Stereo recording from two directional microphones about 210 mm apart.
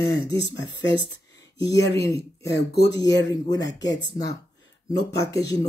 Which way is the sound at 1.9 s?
15° left (ahead or behind).